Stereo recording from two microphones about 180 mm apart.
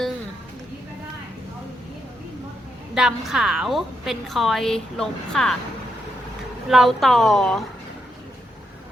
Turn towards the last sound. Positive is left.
turn(degrees=0)  # may be behind; listen again after turning